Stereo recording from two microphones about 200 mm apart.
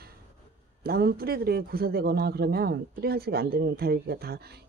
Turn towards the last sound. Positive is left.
turn(degrees=-50)  # may be behind; listen again after turning